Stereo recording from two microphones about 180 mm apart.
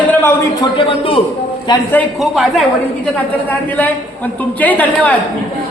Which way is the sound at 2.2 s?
Centre (ahead or behind).